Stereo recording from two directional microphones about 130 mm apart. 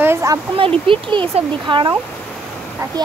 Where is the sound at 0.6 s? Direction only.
45° right (ahead or behind).